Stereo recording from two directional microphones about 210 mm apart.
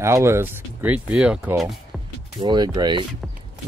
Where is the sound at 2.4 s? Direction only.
20° right (ahead or behind).